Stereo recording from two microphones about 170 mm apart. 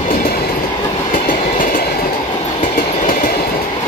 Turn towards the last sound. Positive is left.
turn(degrees=55)  # may be behind; listen again after turning